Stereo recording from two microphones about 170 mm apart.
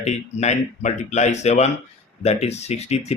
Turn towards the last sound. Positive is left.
turn(degrees=40)  # may be behind; listen again after turning